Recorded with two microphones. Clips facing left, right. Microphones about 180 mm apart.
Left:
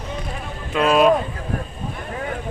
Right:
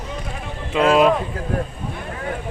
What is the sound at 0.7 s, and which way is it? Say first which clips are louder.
Speech: right 2 dB; 20° right (ahead or behind).